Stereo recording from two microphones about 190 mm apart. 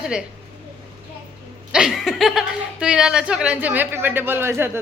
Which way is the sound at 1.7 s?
5° right (ahead or behind).